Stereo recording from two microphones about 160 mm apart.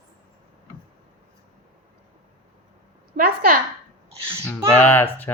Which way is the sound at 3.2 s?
65° right (ahead or behind).